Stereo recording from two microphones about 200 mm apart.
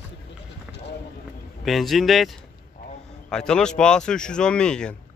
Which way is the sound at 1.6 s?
Centre (ahead or behind).